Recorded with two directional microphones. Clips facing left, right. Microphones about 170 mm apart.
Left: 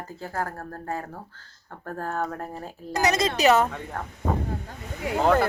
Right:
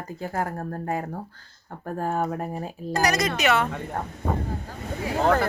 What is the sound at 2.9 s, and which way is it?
Speech, 20° left (ahead or behind).